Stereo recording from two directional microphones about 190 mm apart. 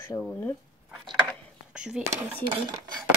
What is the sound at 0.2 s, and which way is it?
Speech, 10° left (ahead or behind).